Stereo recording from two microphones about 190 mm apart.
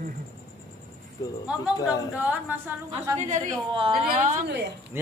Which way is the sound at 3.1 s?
40° right (ahead or behind).